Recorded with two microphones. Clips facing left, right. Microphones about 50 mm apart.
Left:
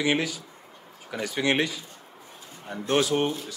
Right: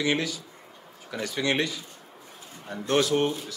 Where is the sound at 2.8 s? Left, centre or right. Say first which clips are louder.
Even; centre.